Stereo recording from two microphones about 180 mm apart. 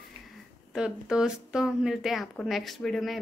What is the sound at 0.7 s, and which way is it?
Speech, 5° right (ahead or behind).